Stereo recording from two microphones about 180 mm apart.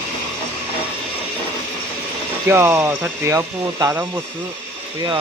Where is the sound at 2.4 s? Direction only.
15° right (ahead or behind).